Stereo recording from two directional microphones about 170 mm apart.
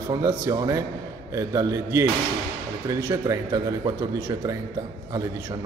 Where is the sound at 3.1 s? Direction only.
20° right (ahead or behind).